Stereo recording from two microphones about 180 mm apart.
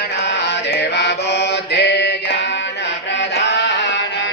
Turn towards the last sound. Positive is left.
turn(degrees=75)  # may be behind; listen again after turning